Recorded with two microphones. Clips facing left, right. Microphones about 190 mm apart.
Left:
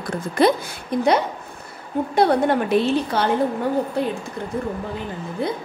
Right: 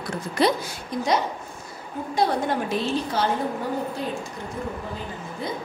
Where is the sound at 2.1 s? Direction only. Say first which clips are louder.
Left 5 dB; 60° left (ahead or behind).